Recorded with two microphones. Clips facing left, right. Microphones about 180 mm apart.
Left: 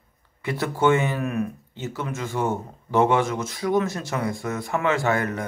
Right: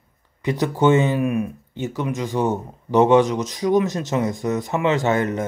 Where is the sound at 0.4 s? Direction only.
20° right (ahead or behind).